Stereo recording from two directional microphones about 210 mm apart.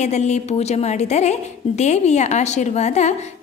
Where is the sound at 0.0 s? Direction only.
35° left (ahead or behind).